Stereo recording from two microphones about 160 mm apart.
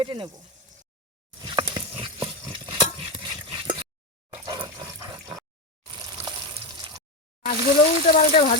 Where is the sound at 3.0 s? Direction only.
30° right (ahead or behind).